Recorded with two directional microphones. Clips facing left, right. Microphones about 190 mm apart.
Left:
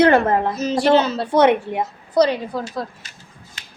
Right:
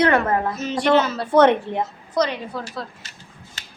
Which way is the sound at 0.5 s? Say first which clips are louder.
Left 2 dB; 35° left (ahead or behind).